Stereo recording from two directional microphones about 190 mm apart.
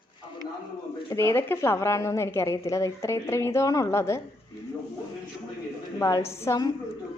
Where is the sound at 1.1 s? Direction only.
10° left (ahead or behind).